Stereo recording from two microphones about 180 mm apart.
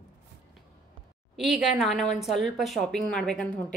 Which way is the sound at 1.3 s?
Centre (ahead or behind).